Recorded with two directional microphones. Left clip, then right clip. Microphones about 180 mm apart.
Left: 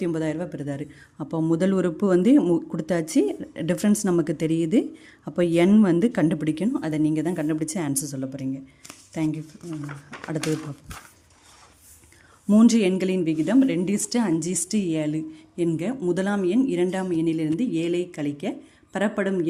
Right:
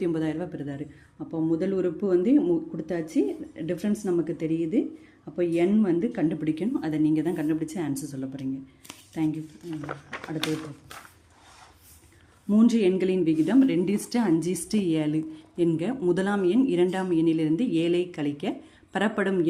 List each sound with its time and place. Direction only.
0.0 s speech: 20° left (ahead or behind)
1.2 s a man's voice: 45° left (ahead or behind); by 9.4 s 25° left (ahead or behind)
12.5 s a woman's voice: 25° left (ahead or behind); by 19.5 s 10° left (ahead or behind)